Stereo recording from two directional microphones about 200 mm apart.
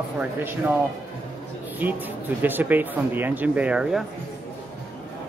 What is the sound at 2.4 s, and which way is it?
A man's voice, 10° right (ahead or behind).